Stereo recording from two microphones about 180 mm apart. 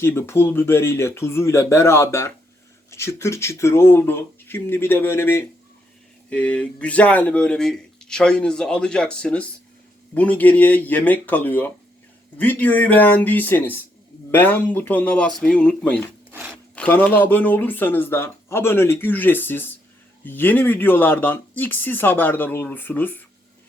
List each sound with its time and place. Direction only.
0.0 s speech: 15° left (ahead or behind)